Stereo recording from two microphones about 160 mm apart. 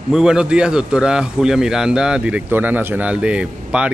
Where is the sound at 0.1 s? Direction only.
5° right (ahead or behind).